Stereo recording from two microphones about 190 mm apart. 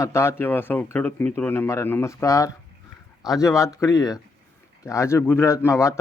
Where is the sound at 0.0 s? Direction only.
15° left (ahead or behind).